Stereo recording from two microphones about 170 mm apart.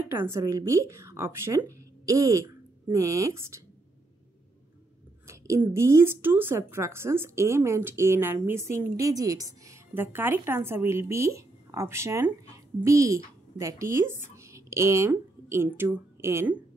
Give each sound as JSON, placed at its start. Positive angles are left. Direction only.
{"t": 0.1, "sound": "speech", "side_deg": -15}
{"t": 5.2, "sound": "speech", "side_deg": -15}